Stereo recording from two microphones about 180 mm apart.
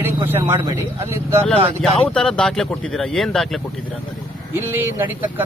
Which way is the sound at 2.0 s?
5° left (ahead or behind).